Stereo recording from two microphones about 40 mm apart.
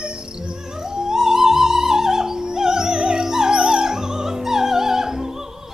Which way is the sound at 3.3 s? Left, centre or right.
Centre.